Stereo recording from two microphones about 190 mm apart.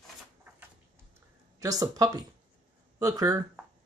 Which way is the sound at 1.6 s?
20° right (ahead or behind).